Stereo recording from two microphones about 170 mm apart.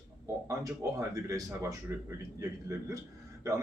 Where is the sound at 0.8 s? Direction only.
15° right (ahead or behind).